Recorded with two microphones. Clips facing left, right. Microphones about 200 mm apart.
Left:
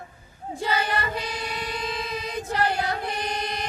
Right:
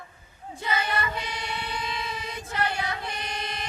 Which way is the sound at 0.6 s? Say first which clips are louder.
Left 2 dB; 35° left (ahead or behind).